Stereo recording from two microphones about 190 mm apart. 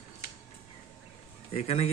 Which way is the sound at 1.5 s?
30° left (ahead or behind).